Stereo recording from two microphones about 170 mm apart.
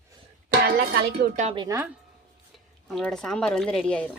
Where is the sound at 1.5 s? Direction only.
20° right (ahead or behind).